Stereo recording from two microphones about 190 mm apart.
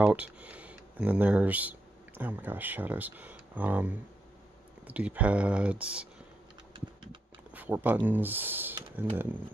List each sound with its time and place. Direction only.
0.0 s speech: 10° right (ahead or behind)
6.7 s a sound: 25° right (ahead or behind)
7.5 s speech: 10° right (ahead or behind)